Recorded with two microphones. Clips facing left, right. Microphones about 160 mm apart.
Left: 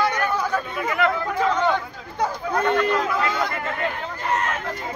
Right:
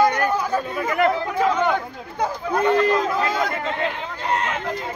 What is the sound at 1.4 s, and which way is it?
Speech, 10° right (ahead or behind).